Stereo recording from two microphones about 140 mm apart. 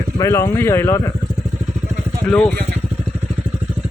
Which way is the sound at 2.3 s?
10° left (ahead or behind).